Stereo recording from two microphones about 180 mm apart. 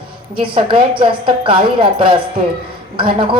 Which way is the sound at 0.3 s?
30° right (ahead or behind).